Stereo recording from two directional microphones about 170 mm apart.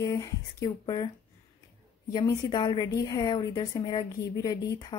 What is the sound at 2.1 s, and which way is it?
Speech, 25° left (ahead or behind).